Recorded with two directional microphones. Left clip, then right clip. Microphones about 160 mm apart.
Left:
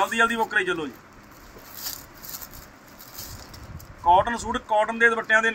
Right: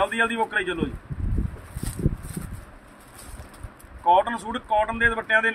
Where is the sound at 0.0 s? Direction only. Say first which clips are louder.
Left 1 dB; 5° right (ahead or behind).